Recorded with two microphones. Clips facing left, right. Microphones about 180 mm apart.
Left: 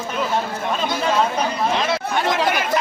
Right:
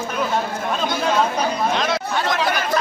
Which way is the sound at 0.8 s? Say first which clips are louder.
Even; 5° left (ahead or behind).